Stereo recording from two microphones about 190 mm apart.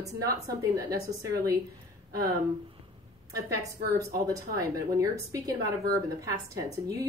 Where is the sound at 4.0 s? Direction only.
20° right (ahead or behind).